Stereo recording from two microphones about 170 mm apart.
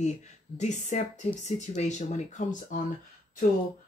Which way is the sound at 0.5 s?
45° left (ahead or behind).